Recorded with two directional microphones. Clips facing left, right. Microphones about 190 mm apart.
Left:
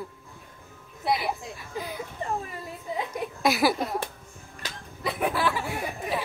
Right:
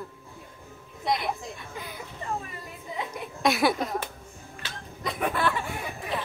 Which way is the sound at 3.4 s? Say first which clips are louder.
Even; centre (ahead or behind).